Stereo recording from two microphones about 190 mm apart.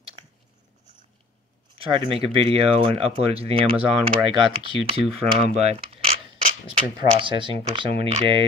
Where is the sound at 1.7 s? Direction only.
30° right (ahead or behind).